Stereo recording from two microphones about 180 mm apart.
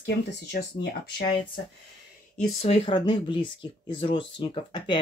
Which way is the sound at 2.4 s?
35° left (ahead or behind).